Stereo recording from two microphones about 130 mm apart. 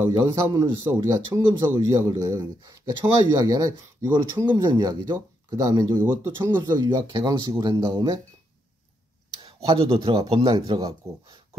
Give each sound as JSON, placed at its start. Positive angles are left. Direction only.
{"t": 0.2, "sound": "speech", "side_deg": -25}
{"t": 4.6, "sound": "speech", "side_deg": -30}
{"t": 9.4, "sound": "speech", "side_deg": -40}